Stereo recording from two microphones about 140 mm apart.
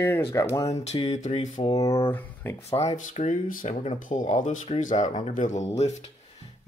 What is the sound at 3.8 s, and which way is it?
Speech, 60° left (ahead or behind).